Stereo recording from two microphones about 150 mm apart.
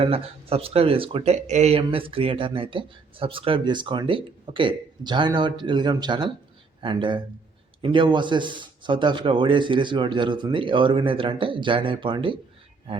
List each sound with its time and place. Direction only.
0.0 s speech: 40° right (ahead or behind)